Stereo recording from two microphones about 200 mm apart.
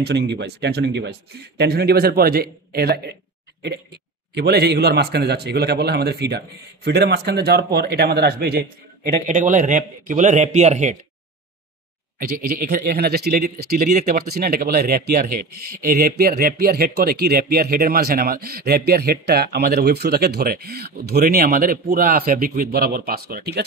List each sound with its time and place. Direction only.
0.0 s speech: 60° right (ahead or behind)
4.4 s speech: 55° right (ahead or behind)
9.3 s a man's voice: 40° right (ahead or behind)
12.2 s speech: 45° right (ahead or behind)